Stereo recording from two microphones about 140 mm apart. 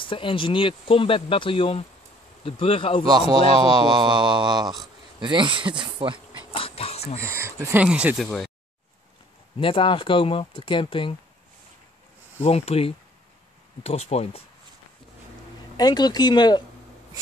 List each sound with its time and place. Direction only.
0.0 s speech: 40° left (ahead or behind)
3.7 s mantra: 30° right (ahead or behind)
6.5 s a sound: 40° left (ahead or behind)
7.2 s speech: 20° right (ahead or behind)
8.2 s speech: 5° left (ahead or behind)
9.6 s speech: 40° left (ahead or behind)
12.4 s speech: 45° left (ahead or behind)
15.8 s speech: 30° left (ahead or behind)